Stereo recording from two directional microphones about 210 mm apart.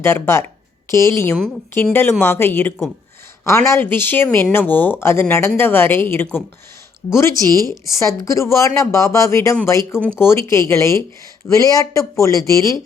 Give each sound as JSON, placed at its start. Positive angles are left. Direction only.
{"t": 0.0, "sound": "speech", "side_deg": 10}
{"t": 7.4, "sound": "speech", "side_deg": -15}
{"t": 7.7, "sound": "speech", "side_deg": 15}